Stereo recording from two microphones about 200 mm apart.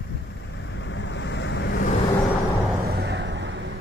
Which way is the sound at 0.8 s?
65° left (ahead or behind).